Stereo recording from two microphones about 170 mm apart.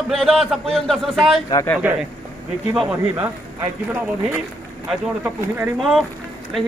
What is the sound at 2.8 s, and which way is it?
Speech, 10° right (ahead or behind).